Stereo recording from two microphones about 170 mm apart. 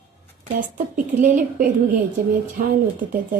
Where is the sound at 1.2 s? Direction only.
50° right (ahead or behind).